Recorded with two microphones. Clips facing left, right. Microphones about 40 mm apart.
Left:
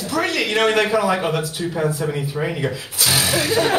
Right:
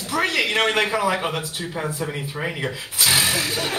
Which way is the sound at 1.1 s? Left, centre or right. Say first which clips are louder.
Left 4 dB; centre.